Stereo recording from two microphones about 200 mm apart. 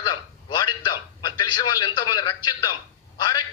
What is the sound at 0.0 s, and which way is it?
A man's voice, 20° left (ahead or behind).